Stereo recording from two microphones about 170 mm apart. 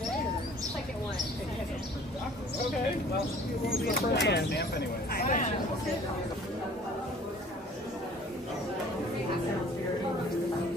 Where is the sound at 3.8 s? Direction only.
70° left (ahead or behind).